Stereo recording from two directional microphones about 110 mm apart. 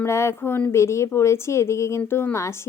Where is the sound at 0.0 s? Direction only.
25° left (ahead or behind).